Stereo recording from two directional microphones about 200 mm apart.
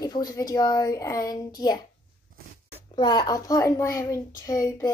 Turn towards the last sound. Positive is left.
turn(degrees=15)  # may be behind; listen again after turning